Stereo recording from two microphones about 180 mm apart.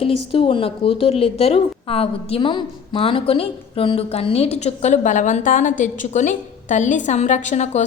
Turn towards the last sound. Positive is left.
turn(degrees=40)  # may be behind; listen again after turning